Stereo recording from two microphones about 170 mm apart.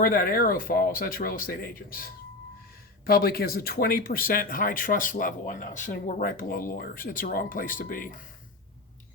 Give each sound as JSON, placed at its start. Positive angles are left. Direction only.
{"t": 0.0, "sound": "speech", "side_deg": 55}